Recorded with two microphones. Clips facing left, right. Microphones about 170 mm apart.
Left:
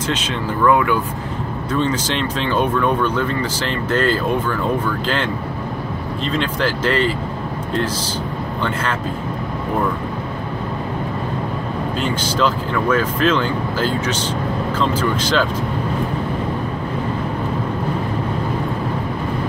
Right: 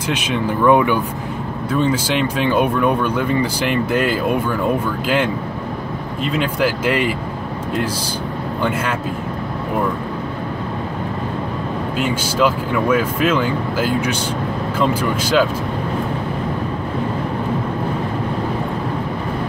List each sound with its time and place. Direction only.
0.1 s speech: 15° right (ahead or behind)
1.7 s speech: 10° right (ahead or behind)
12.0 s speech: 10° right (ahead or behind)